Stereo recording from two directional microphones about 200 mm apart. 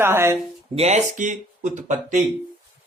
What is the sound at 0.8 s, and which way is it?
Speech, 35° right (ahead or behind).